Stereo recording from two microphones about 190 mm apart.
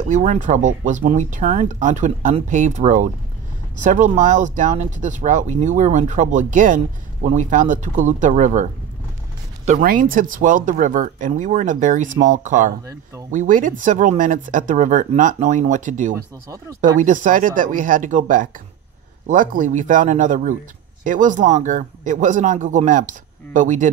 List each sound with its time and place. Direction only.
0.1 s speech: 40° right (ahead or behind)
9.7 s speech: 45° right (ahead or behind)
16.4 s speech: 15° right (ahead or behind)
17.0 s speech: 45° right (ahead or behind)